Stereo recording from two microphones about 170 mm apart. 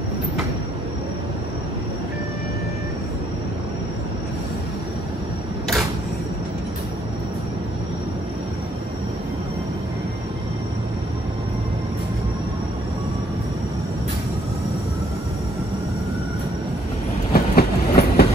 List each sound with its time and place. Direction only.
17.3 s train: 65° left (ahead or behind)